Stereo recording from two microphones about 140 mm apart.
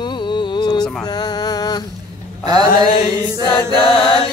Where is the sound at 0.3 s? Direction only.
35° left (ahead or behind).